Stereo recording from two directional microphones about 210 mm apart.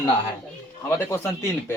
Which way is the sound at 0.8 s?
10° left (ahead or behind).